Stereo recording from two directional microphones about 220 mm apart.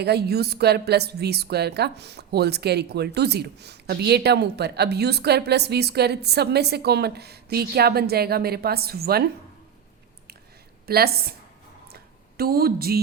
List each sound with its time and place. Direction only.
0.0 s a woman's voice: 45° right (ahead or behind)
10.8 s a woman's voice: 45° right (ahead or behind)
11.9 s a sound: 45° right (ahead or behind)